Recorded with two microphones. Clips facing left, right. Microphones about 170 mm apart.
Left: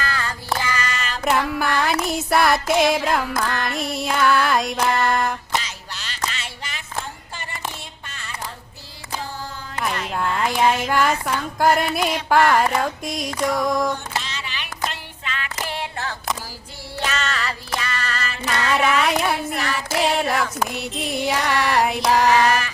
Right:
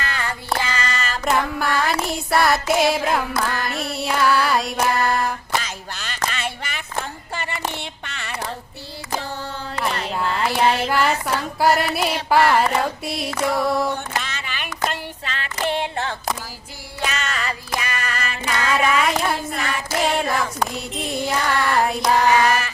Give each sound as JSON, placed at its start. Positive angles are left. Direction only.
{"t": 0.0, "sound": "child singing", "side_deg": -20}
{"t": 1.2, "sound": "child singing", "side_deg": 0}
{"t": 2.1, "sound": "female singing", "side_deg": 0}
{"t": 5.5, "sound": "music", "side_deg": -50}
{"t": 7.7, "sound": "a sound", "side_deg": -70}
{"t": 10.1, "sound": "carnatic music", "side_deg": 0}
{"t": 11.6, "sound": "female singing", "side_deg": -5}
{"t": 13.4, "sound": "a sound", "side_deg": -5}
{"t": 14.2, "sound": "a sound", "side_deg": -55}
{"t": 14.8, "sound": "female singing", "side_deg": -35}
{"t": 17.0, "sound": "music", "side_deg": -10}
{"t": 20.9, "sound": "female singing", "side_deg": 0}